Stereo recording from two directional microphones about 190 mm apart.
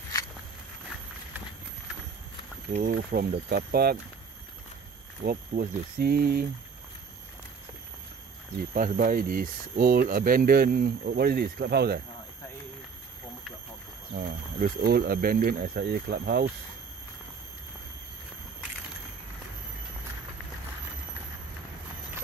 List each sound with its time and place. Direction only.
2.8 s speech: 50° right (ahead or behind)
5.2 s speech: 50° right (ahead or behind)
8.7 s speech: 50° right (ahead or behind)
14.1 s speech: 50° right (ahead or behind)